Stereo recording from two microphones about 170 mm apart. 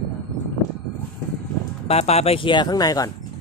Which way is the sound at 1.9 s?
40° left (ahead or behind).